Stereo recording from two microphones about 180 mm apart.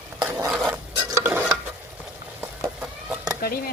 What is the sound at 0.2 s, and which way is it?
Stir, 10° right (ahead or behind).